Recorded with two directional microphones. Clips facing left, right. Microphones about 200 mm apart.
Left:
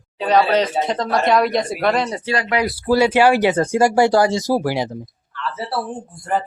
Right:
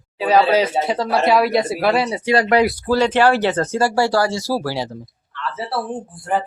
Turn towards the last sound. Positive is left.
turn(degrees=-5)  # may be behind; listen again after turning